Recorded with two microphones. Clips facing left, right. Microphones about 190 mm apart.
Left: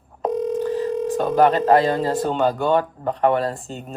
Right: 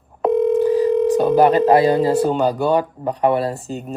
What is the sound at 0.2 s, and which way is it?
Telephone, 60° right (ahead or behind).